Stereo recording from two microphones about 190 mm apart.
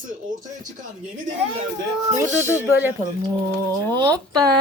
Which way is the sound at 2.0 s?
15° right (ahead or behind).